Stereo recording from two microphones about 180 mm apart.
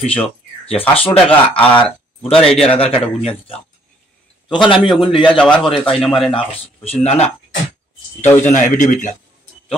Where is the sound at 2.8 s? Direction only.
30° left (ahead or behind).